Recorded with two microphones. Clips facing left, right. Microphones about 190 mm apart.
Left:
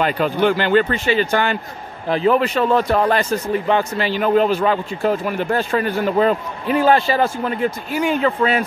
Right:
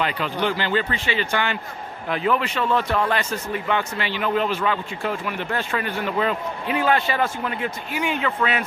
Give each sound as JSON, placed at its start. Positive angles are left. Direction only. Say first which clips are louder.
{"t": 0.0, "sound": "speech", "louder": "left 7 dB", "side_deg": 50}